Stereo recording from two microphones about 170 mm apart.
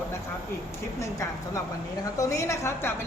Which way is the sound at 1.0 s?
20° left (ahead or behind).